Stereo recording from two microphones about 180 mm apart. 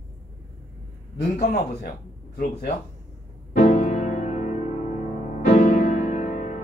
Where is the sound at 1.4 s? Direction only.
55° left (ahead or behind).